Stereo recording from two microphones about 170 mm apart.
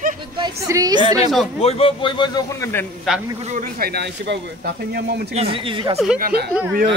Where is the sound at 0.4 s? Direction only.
20° right (ahead or behind).